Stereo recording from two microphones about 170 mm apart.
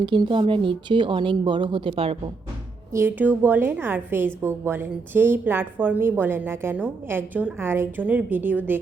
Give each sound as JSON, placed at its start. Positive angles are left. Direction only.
{"t": 0.0, "sound": "a woman's voice", "side_deg": -30}
{"t": 2.9, "sound": "speech", "side_deg": -10}